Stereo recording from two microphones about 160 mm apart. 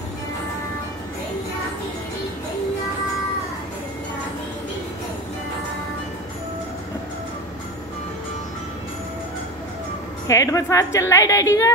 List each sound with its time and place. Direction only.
10.2 s a woman's voice: 20° left (ahead or behind)